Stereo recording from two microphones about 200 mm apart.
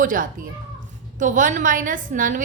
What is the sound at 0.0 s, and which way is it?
A woman's voice, 40° right (ahead or behind).